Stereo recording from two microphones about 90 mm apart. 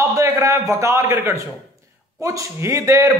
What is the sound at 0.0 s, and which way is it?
A man's voice, 35° right (ahead or behind).